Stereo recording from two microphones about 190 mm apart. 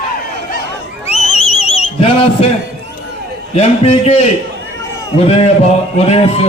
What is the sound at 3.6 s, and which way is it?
Speech, 35° left (ahead or behind).